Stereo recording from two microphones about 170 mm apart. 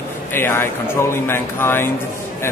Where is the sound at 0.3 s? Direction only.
15° left (ahead or behind).